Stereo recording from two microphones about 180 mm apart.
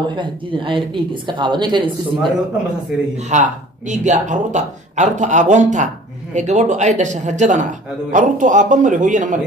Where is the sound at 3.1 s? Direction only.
40° right (ahead or behind).